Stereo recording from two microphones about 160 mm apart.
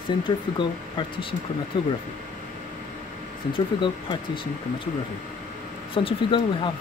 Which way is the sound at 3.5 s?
30° left (ahead or behind).